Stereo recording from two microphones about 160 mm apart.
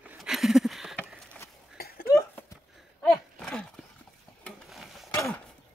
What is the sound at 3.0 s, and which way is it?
Gasp, 5° left (ahead or behind).